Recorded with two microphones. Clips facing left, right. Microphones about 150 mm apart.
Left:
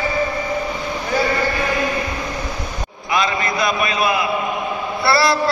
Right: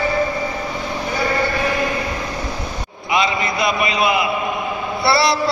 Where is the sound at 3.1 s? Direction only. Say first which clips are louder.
Right 1 dB; 20° right (ahead or behind).